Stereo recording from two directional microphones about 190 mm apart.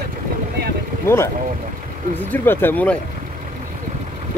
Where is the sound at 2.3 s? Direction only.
10° left (ahead or behind).